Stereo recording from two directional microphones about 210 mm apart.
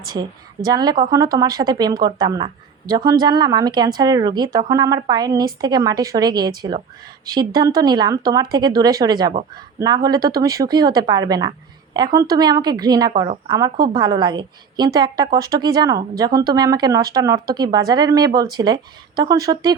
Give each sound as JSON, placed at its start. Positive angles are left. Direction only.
{"t": 0.1, "sound": "a woman's voice", "side_deg": -20}